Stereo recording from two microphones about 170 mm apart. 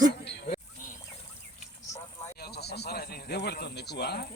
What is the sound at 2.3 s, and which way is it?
Speech, 70° left (ahead or behind).